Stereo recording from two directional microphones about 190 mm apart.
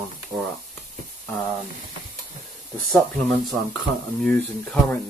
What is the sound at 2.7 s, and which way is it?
Speech, centre (ahead or behind).